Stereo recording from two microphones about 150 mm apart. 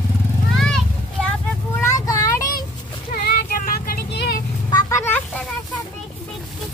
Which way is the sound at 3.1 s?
80° left.